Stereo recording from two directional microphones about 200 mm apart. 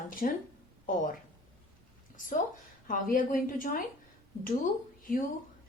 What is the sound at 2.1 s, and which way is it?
A woman's voice, 40° left (ahead or behind).